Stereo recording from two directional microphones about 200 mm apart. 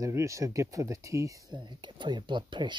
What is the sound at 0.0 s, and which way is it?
Speech, 15° right (ahead or behind).